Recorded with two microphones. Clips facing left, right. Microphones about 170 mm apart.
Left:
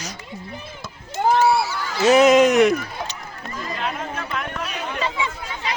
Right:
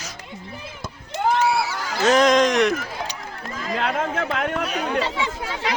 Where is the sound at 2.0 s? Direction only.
10° left (ahead or behind).